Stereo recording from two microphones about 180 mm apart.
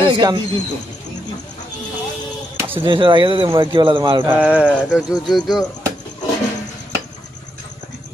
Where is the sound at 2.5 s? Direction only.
15° right (ahead or behind).